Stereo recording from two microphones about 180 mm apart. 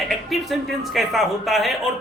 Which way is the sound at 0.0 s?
Centre (ahead or behind).